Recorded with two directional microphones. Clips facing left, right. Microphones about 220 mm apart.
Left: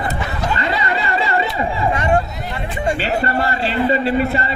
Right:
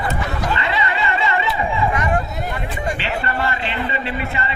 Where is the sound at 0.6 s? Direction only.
40° left (ahead or behind).